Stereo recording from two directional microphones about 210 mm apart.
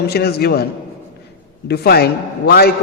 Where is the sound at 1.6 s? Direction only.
50° left (ahead or behind).